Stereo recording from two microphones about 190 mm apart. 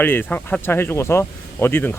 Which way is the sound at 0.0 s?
10° left (ahead or behind).